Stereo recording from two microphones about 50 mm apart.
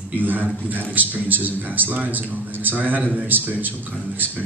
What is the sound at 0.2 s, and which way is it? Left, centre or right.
A man's voice, right.